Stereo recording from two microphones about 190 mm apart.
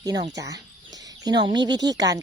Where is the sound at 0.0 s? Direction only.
20° right (ahead or behind).